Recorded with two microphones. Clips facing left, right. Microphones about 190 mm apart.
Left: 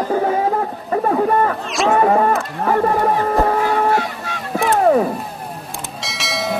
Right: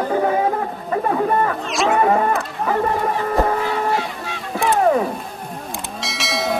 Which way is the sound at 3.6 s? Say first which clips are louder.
Left 4 dB; 50° left (ahead or behind).